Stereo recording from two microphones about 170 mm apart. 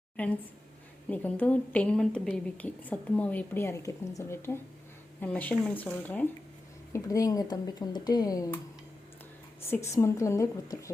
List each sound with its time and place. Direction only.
1.1 s a woman's voice: 10° left (ahead or behind)
6.9 s speech: 20° left (ahead or behind)
9.6 s a woman's voice: 15° left (ahead or behind)